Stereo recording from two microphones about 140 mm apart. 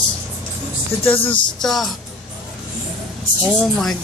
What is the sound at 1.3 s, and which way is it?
Speech, centre (ahead or behind).